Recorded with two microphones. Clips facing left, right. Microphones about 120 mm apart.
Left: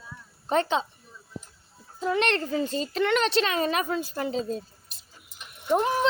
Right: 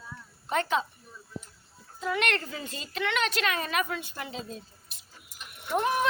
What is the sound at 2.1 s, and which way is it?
Speech, 30° left (ahead or behind).